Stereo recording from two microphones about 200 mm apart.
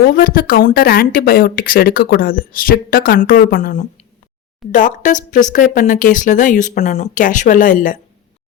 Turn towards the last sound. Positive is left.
turn(degrees=40)  # may be behind; listen again after turning